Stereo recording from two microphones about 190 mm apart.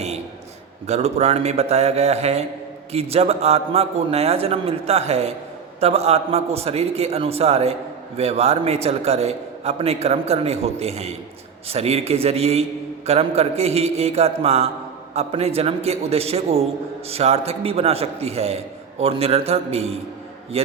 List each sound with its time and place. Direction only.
0.9 s a man's voice: 35° right (ahead or behind)